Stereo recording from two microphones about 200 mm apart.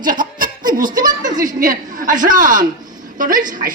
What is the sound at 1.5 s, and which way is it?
A man's voice, 40° right (ahead or behind).